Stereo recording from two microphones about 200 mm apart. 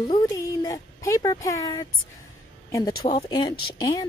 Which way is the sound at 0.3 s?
15° left (ahead or behind).